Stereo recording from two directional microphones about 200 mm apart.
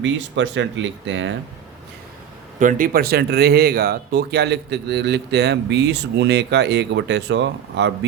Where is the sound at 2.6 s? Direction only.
40° right (ahead or behind).